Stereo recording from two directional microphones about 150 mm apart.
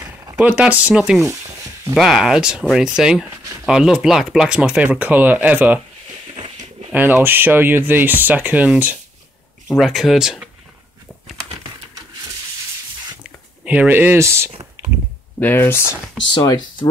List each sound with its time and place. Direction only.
0.4 s speech: 10° right (ahead or behind)
6.3 s a sound: 40° right (ahead or behind)
6.9 s speech: 10° right (ahead or behind)
13.7 s speech: 10° right (ahead or behind)
15.3 s speech: 15° left (ahead or behind)
16.3 s speech: 30° left (ahead or behind)